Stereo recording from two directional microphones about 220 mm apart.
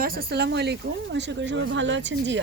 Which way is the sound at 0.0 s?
45° right (ahead or behind).